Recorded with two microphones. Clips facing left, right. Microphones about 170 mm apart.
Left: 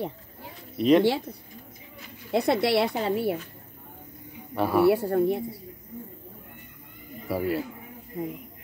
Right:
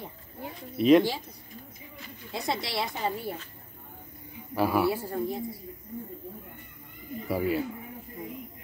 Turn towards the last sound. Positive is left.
turn(degrees=0)  # may be behind; listen again after turning